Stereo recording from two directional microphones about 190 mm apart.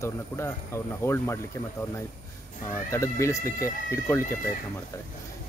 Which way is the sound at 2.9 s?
15° left (ahead or behind).